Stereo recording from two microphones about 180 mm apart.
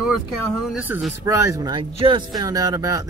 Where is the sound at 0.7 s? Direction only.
10° right (ahead or behind).